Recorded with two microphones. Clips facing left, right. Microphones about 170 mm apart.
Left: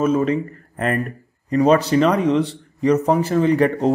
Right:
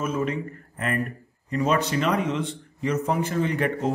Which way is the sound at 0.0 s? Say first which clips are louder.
Left 8 dB; 35° left (ahead or behind).